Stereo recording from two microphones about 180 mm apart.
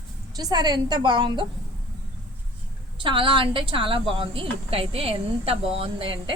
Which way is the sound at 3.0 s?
30° right (ahead or behind).